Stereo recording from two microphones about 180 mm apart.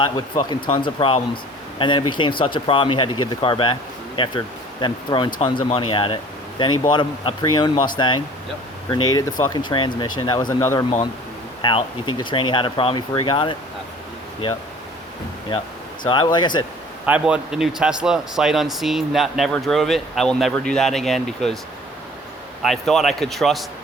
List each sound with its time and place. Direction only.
0.7 s speech: 25° left (ahead or behind)
11.6 s speech: 25° left (ahead or behind)
16.0 s speech: 25° left (ahead or behind)
17.1 s speech: 5° right (ahead or behind)
22.6 s speech: centre (ahead or behind)